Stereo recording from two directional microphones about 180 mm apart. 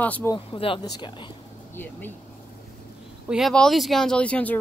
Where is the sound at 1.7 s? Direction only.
10° left (ahead or behind).